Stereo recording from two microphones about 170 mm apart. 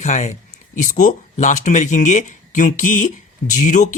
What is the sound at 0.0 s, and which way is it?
Speech, 45° left (ahead or behind).